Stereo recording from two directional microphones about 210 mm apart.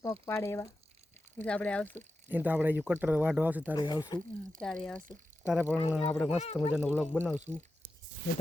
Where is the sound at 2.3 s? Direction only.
10° right (ahead or behind).